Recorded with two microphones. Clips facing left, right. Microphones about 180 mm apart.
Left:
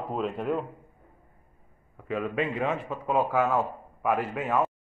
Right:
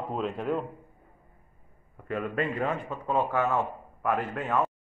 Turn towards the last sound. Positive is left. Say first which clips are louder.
# left 1 dB
turn(degrees=10)  # may be behind; listen again after turning